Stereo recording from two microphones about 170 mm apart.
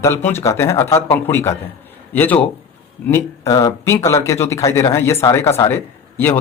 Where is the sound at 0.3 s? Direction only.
15° left (ahead or behind).